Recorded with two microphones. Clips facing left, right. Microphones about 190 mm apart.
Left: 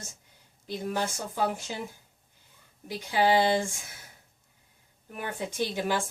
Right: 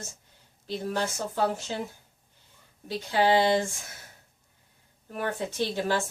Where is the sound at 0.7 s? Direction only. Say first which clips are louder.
Right 1 dB; 10° left (ahead or behind).